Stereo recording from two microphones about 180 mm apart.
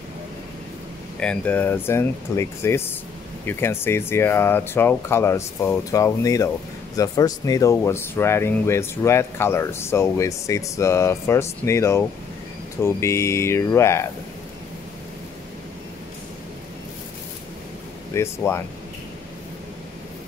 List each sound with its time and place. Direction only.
1.2 s speech: 5° left (ahead or behind)
18.1 s speech: 15° left (ahead or behind)